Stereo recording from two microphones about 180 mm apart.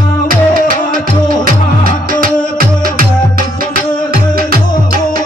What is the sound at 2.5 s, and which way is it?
Music, 50° right (ahead or behind).